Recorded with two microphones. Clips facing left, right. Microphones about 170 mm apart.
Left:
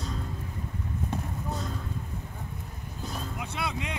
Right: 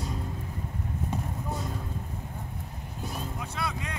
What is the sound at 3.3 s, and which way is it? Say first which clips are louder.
Vehicle: left 1 dB; 20° left (ahead or behind).